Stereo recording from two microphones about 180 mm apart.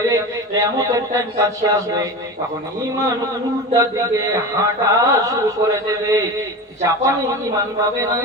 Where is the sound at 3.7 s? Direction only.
20° right (ahead or behind).